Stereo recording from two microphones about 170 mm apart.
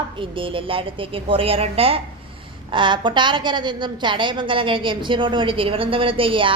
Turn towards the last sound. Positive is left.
turn(degrees=-30)  # may be behind; listen again after turning